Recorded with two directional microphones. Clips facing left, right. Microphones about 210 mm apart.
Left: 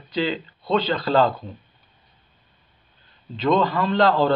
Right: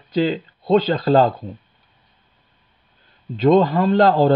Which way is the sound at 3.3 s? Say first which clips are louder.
Right 6 dB; 45° right (ahead or behind).